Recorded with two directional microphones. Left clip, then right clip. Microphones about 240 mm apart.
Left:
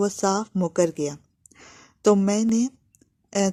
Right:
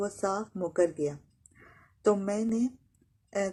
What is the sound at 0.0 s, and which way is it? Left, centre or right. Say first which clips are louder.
Speech: left 8 dB; left.